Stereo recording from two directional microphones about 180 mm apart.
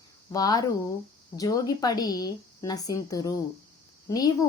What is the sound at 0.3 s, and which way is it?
A woman's voice, 20° left (ahead or behind).